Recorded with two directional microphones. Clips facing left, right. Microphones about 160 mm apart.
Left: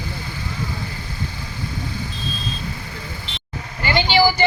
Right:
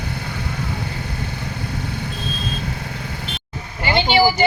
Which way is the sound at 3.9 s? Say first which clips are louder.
Right 1 dB; 20° right (ahead or behind).